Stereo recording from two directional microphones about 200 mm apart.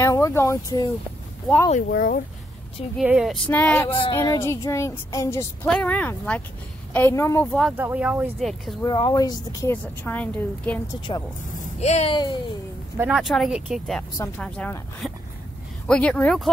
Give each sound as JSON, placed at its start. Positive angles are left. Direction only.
{"t": 0.0, "sound": "speech", "side_deg": 15}
{"t": 1.9, "sound": "speech", "side_deg": 45}
{"t": 3.0, "sound": "speech", "side_deg": -5}
{"t": 3.4, "sound": "speech", "side_deg": 10}
{"t": 3.9, "sound": "speech", "side_deg": 25}
{"t": 4.2, "sound": "speech", "side_deg": 15}
{"t": 7.5, "sound": "speech", "side_deg": -5}
{"t": 8.8, "sound": "speech", "side_deg": 20}
{"t": 11.1, "sound": "speech", "side_deg": 25}
{"t": 12.9, "sound": "speech", "side_deg": -5}